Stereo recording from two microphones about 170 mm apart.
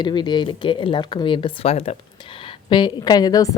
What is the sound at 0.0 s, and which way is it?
A woman's voice, 25° left (ahead or behind).